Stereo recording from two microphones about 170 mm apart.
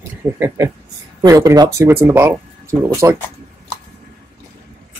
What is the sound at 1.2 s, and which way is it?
Speech, 20° right (ahead or behind).